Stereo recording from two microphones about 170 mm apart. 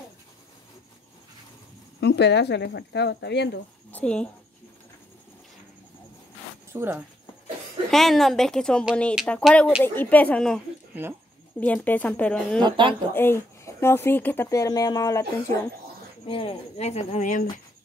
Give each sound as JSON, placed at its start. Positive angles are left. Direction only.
{"t": 2.0, "sound": "speech", "side_deg": 85}
{"t": 3.9, "sound": "speech", "side_deg": 5}
{"t": 6.7, "sound": "speech", "side_deg": -15}
{"t": 7.9, "sound": "speech", "side_deg": 0}
{"t": 11.6, "sound": "speech", "side_deg": 10}
{"t": 12.6, "sound": "speech", "side_deg": -30}
{"t": 13.1, "sound": "speech", "side_deg": 15}
{"t": 16.3, "sound": "speech", "side_deg": 30}